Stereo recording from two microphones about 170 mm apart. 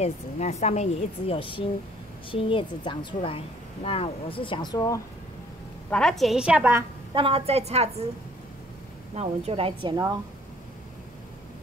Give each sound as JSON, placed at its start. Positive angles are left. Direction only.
{"t": 0.0, "sound": "speech", "side_deg": 40}
{"t": 5.9, "sound": "a woman's voice", "side_deg": 5}
{"t": 7.2, "sound": "a woman's voice", "side_deg": -35}
{"t": 9.1, "sound": "a woman's voice", "side_deg": -35}